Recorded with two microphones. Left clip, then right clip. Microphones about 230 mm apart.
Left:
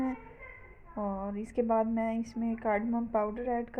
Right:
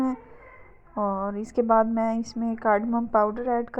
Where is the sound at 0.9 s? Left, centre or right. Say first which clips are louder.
Right 9 dB; right.